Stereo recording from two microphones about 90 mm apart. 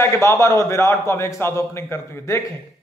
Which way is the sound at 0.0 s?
30° left (ahead or behind).